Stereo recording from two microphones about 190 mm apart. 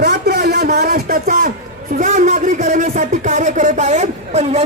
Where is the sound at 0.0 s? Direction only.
60° right (ahead or behind).